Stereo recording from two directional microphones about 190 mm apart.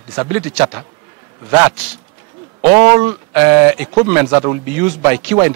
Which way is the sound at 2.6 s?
15° right (ahead or behind).